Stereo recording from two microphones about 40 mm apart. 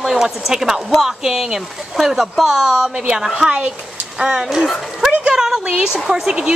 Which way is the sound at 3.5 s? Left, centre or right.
Right.